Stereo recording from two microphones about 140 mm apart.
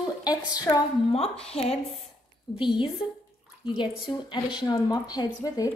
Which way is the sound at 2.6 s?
35° left (ahead or behind).